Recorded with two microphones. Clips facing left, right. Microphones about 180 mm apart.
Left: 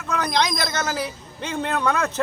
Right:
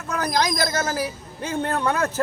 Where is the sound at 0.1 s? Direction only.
5° right (ahead or behind).